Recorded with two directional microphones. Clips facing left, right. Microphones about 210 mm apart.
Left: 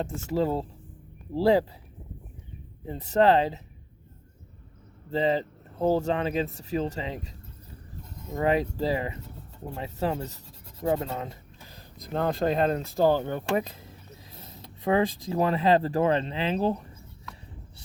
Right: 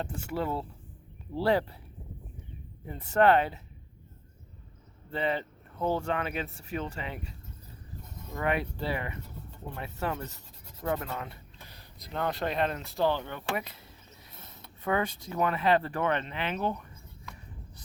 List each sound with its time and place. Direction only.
0.0 s speech: 35° left (ahead or behind)
2.8 s speech: 35° left (ahead or behind)
5.1 s speech: 35° left (ahead or behind)
8.4 s speech: 35° left (ahead or behind)
10.8 s rub: 30° left (ahead or behind)
12.1 s speech: 35° left (ahead or behind)
12.8 s speech: 45° left (ahead or behind)
14.3 s mechanisms: 35° left (ahead or behind)
15.3 s speech: 35° left (ahead or behind)